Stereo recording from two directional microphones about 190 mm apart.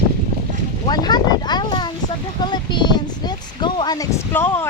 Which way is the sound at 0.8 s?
20° left (ahead or behind).